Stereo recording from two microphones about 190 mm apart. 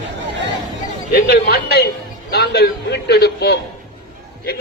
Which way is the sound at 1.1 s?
55° left (ahead or behind).